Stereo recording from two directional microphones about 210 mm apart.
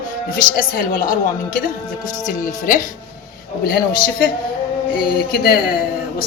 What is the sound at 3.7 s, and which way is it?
Speech, 45° left (ahead or behind).